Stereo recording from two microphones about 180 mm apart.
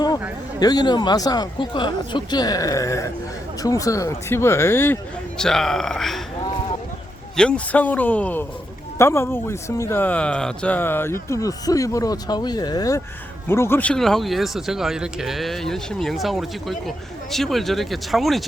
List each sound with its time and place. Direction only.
0.6 s speech: 20° left (ahead or behind)
5.4 s speech: 5° left (ahead or behind)
7.3 s speech: 5° left (ahead or behind)